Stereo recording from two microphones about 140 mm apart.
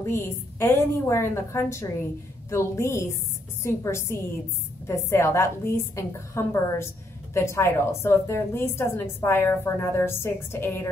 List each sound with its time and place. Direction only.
0.0 s a woman's voice: 15° left (ahead or behind)